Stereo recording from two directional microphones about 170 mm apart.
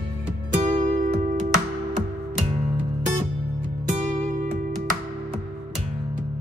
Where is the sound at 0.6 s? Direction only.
45° right (ahead or behind).